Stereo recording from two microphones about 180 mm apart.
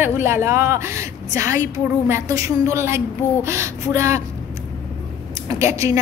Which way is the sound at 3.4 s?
15° right (ahead or behind).